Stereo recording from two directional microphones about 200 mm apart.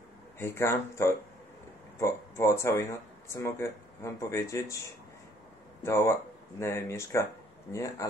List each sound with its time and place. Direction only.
0.4 s speech: 15° left (ahead or behind)
5.8 s speech: 15° left (ahead or behind)